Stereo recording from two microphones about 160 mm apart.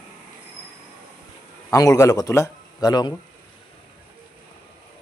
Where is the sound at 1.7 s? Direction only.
20° left (ahead or behind).